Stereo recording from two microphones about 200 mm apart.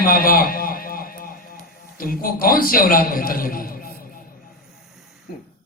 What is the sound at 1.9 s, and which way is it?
A man's voice, 45° left (ahead or behind).